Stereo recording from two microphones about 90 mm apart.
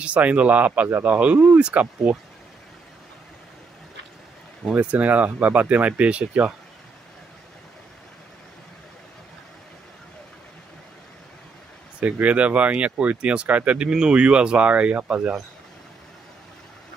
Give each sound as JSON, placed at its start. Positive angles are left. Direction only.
{"t": 0.0, "sound": "speech", "side_deg": -15}
{"t": 4.7, "sound": "speech", "side_deg": -20}
{"t": 12.0, "sound": "speech", "side_deg": -15}